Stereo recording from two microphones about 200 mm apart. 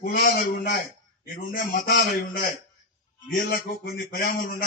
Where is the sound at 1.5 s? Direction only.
45° left (ahead or behind).